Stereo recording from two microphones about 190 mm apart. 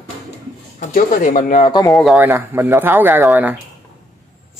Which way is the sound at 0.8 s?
45° left (ahead or behind).